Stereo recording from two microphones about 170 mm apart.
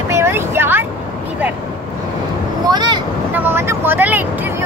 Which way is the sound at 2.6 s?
25° right (ahead or behind).